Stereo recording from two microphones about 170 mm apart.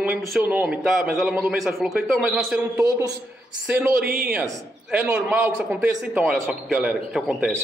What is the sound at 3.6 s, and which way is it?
A man's voice, 5° right (ahead or behind).